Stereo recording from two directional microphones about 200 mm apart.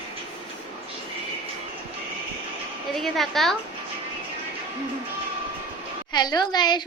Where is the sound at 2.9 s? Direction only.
Centre (ahead or behind).